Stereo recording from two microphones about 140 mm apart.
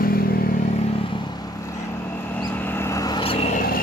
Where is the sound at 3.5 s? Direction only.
90° left.